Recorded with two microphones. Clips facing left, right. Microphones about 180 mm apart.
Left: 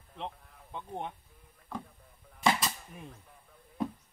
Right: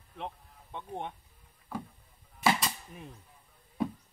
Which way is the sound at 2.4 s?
Centre (ahead or behind).